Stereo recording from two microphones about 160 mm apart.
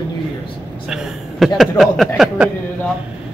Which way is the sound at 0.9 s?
5° right (ahead or behind).